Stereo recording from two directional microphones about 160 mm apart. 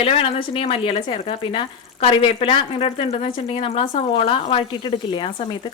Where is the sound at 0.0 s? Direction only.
35° left (ahead or behind).